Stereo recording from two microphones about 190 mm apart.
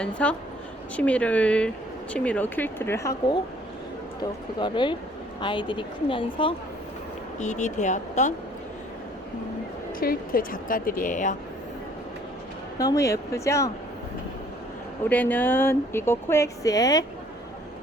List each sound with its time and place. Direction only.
0.2 s speech: 5° left (ahead or behind); by 6.5 s 25° left (ahead or behind)
7.3 s speech: 40° left (ahead or behind)
10.0 s speech: 50° left (ahead or behind)
12.8 s speech: 15° left (ahead or behind)
15.1 s speech: 10° left (ahead or behind)